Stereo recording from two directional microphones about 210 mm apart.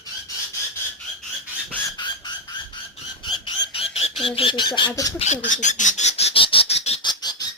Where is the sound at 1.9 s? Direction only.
20° left (ahead or behind).